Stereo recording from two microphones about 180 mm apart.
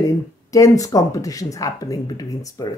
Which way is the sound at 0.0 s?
20° left (ahead or behind).